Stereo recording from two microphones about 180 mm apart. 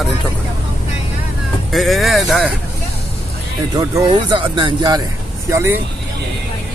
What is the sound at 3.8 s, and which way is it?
Speech, 25° right (ahead or behind).